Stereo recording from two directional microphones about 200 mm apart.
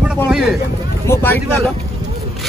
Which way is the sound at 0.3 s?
5° right (ahead or behind).